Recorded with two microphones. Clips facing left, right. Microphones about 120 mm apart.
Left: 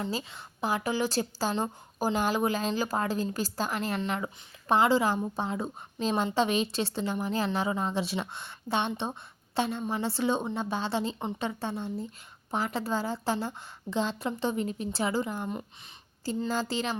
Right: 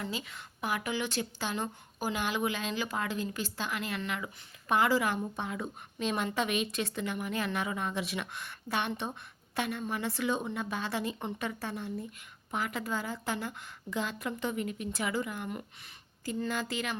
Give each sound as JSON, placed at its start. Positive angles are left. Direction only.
{"t": 0.1, "sound": "a woman's voice", "side_deg": 35}